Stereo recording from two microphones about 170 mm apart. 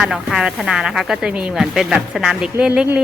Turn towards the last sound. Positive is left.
turn(degrees=-5)  # may be behind; listen again after turning